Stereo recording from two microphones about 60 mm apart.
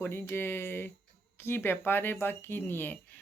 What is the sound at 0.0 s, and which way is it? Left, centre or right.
Speech, left.